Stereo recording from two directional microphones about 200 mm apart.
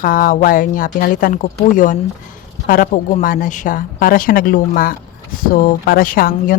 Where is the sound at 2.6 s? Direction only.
45° left (ahead or behind).